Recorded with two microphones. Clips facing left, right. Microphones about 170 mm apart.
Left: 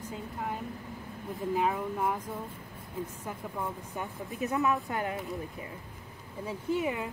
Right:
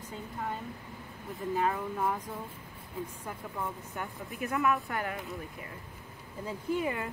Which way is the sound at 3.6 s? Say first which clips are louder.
Left 1 dB; 20° left (ahead or behind).